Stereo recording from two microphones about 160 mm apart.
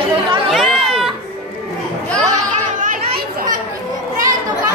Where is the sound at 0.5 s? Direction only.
Centre (ahead or behind).